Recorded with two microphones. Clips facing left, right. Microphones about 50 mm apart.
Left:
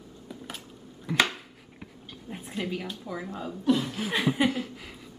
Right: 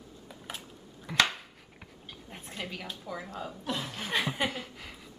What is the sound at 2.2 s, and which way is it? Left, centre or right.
Speech, centre.